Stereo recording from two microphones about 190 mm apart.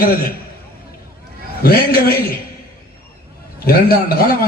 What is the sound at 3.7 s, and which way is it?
Speech, 50° left (ahead or behind).